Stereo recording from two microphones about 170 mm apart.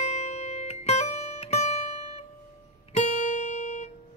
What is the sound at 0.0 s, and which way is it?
Music, 40° left (ahead or behind).